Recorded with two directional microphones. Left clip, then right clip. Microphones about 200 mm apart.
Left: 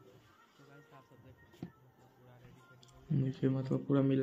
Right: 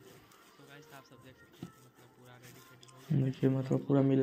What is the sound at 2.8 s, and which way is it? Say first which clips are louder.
Speech: right 3 dB; centre (ahead or behind).